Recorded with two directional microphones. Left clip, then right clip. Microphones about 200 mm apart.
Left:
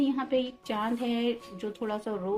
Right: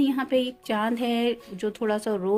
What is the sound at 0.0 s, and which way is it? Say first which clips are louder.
A woman's voice: right 4 dB; 45° right (ahead or behind).